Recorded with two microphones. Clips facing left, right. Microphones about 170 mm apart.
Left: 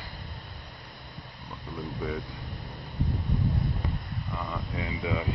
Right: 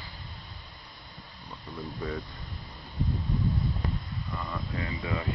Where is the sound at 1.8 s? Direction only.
5° left (ahead or behind).